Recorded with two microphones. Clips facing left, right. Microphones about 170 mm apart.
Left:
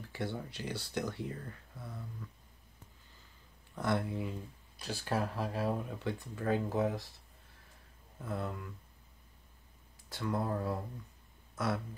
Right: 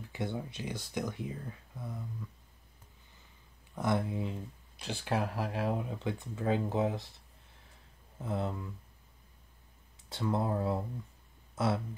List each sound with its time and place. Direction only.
0.1 s a sound: 20° right (ahead or behind)
0.5 s speech: 15° right (ahead or behind)
3.7 s speech: 20° right (ahead or behind)
8.2 s speech: 25° right (ahead or behind)
10.0 s speech: 25° right (ahead or behind)